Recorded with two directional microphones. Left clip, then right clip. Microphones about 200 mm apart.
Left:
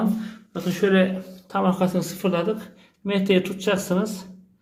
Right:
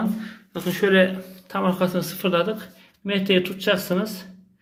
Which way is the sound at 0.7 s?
Centre (ahead or behind).